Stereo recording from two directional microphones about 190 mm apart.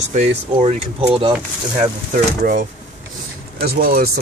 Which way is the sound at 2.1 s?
45° right (ahead or behind).